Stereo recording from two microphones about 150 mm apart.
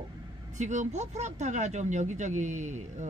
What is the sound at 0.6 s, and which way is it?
Speech, 50° right (ahead or behind).